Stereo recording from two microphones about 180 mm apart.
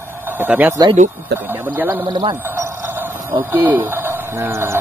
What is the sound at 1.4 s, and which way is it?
Speech, 10° right (ahead or behind).